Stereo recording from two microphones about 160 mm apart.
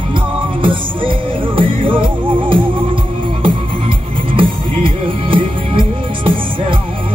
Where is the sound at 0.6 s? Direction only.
30° right (ahead or behind).